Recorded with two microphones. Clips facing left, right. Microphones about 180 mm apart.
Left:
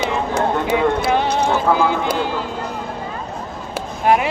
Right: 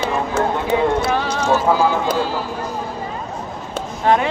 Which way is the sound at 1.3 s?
60° left (ahead or behind).